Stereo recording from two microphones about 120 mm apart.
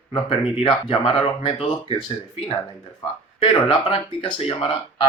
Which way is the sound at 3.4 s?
45° left (ahead or behind).